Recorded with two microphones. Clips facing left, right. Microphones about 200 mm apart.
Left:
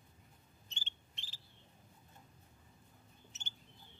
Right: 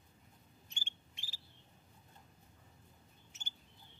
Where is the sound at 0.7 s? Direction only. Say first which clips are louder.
Left 1 dB; 10° right (ahead or behind).